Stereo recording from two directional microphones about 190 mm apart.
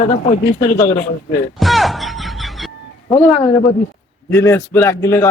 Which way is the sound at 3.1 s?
35° left (ahead or behind).